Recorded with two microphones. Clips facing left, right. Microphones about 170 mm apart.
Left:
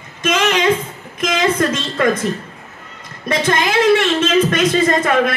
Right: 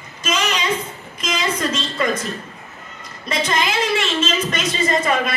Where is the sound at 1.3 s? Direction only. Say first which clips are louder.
Left 5 dB; 55° left (ahead or behind).